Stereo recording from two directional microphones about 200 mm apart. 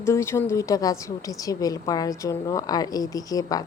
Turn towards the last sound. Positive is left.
turn(degrees=20)  # may be behind; listen again after turning